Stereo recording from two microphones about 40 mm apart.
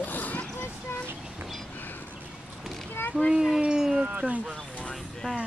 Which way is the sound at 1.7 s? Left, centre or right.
Left.